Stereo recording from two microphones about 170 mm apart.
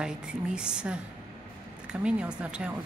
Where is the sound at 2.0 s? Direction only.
5° right (ahead or behind).